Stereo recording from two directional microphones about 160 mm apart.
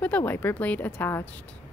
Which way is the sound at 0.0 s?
10° left (ahead or behind).